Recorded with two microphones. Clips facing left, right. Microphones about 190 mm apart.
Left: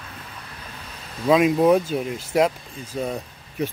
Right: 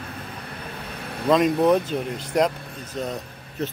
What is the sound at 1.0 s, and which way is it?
Vehicle, 60° right (ahead or behind).